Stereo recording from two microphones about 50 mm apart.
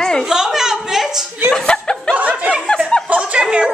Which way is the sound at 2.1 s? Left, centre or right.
Right.